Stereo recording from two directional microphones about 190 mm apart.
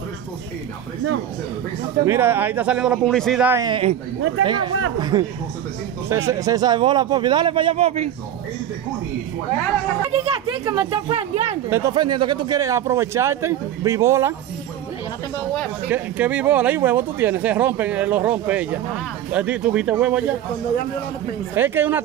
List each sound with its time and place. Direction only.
2.0 s speech: 10° right (ahead or behind)
3.4 s a man's voice: 15° right (ahead or behind); by 8.1 s 35° right (ahead or behind)
10.1 s speech: 30° right (ahead or behind)
11.7 s speech: 20° right (ahead or behind)
15.9 s speech: 10° right (ahead or behind)
21.5 s speech: 10° right (ahead or behind)